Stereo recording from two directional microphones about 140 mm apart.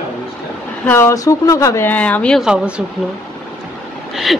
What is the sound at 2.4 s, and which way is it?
Speech, 5° right (ahead or behind).